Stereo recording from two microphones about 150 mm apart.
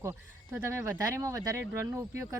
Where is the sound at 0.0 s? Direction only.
15° right (ahead or behind).